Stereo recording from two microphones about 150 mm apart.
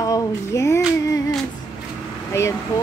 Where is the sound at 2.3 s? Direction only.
20° left (ahead or behind).